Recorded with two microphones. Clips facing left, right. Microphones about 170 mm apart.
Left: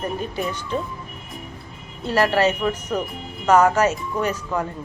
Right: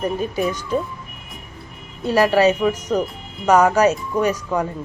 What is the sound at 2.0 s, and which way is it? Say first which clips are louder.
A woman's voice: right 4 dB; 15° right (ahead or behind).